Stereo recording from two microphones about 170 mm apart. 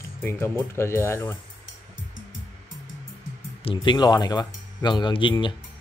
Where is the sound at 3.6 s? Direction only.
30° left (ahead or behind).